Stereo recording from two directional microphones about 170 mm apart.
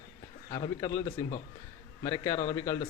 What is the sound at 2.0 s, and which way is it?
Speech, 15° left (ahead or behind).